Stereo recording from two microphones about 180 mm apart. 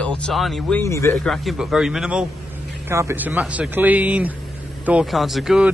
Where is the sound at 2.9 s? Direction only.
15° right (ahead or behind).